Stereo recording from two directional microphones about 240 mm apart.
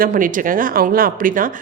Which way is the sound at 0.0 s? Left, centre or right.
Right.